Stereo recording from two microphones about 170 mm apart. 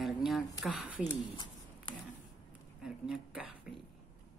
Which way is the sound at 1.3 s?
25° left (ahead or behind).